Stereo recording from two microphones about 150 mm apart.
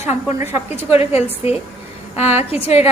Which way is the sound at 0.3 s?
15° right (ahead or behind).